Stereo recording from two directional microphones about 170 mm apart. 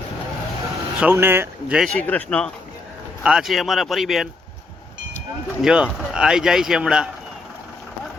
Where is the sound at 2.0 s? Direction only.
10° left (ahead or behind).